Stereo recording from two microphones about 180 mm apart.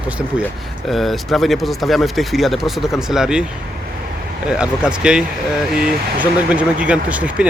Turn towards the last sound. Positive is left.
turn(degrees=-5)  # may be behind; listen again after turning